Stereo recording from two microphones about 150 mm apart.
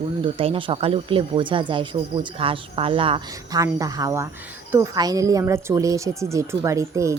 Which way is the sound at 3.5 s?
25° right (ahead or behind).